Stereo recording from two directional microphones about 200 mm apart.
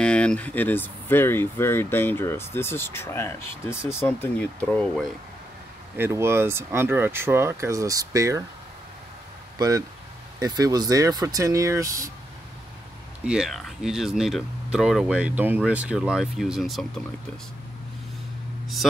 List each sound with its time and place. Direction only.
0.0 s speech: 5° left (ahead or behind)
5.9 s speech: 10° right (ahead or behind)
9.6 s speech: 15° right (ahead or behind)
13.2 s speech: 5° right (ahead or behind)